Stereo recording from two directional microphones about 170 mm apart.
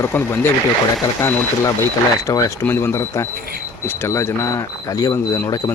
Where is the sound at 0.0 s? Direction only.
15° left (ahead or behind).